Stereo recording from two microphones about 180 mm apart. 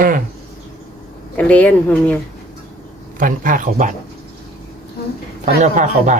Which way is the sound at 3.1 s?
50° right (ahead or behind).